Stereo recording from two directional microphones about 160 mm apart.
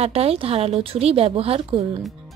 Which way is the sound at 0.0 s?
40° right (ahead or behind).